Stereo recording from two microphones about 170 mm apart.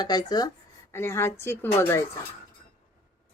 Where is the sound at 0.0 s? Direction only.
25° left (ahead or behind).